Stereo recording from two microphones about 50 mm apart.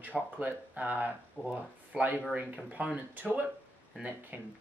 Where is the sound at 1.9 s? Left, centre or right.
Right.